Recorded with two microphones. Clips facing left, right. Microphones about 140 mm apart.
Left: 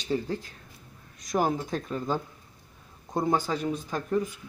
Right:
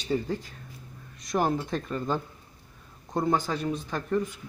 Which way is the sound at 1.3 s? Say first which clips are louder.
Even; 10° left (ahead or behind).